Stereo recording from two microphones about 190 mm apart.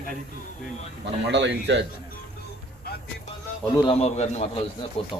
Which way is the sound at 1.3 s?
65° right (ahead or behind).